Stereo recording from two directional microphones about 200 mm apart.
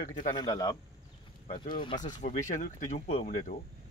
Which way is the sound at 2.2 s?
40° left (ahead or behind).